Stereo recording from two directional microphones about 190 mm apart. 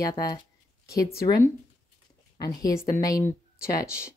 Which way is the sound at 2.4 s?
20° left (ahead or behind).